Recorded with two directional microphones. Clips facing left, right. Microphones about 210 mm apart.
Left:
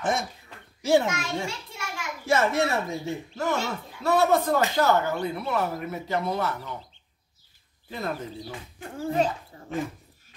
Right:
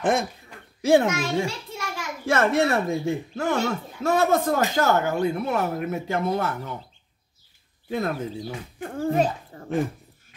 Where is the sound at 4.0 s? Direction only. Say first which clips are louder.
Right 1 dB; 45° right (ahead or behind).